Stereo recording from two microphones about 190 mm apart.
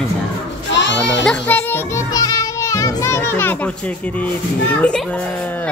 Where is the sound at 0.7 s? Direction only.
70° left (ahead or behind).